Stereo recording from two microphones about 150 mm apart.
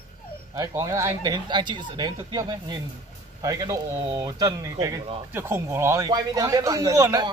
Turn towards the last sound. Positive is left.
turn(degrees=-20)  # may be behind; listen again after turning